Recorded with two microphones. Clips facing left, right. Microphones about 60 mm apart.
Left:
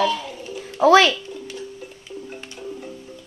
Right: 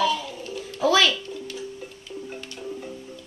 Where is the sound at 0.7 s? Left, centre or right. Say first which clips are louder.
Left 7 dB; left.